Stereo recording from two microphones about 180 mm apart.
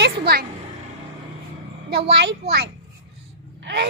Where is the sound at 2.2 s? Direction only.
65° right (ahead or behind).